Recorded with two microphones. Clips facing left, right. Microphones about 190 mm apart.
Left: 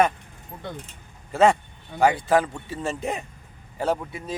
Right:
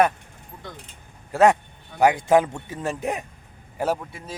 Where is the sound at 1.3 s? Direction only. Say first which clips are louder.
Right 1 dB; 15° right (ahead or behind).